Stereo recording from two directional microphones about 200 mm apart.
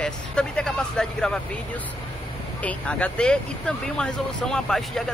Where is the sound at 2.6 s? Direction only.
5° left (ahead or behind).